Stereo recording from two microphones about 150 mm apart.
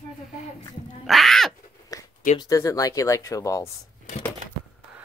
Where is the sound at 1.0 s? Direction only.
Centre (ahead or behind).